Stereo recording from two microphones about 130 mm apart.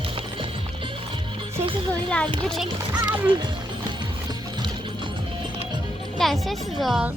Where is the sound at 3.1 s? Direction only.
35° right (ahead or behind).